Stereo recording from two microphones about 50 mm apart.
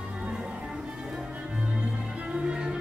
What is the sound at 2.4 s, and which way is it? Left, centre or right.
Music, centre.